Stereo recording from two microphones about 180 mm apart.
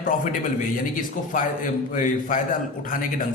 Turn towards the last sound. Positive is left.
turn(degrees=50)  # may be behind; listen again after turning